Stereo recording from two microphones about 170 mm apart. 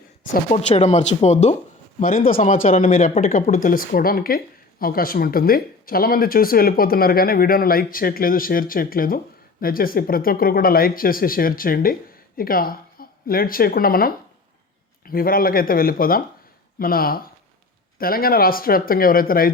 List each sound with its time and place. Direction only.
0.5 s speech: 45° left (ahead or behind)
2.0 s speech: 55° left (ahead or behind)
15.1 s speech: 60° left (ahead or behind)